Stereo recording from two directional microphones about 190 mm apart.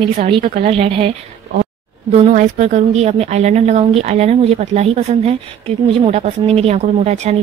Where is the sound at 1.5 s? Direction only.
40° right (ahead or behind).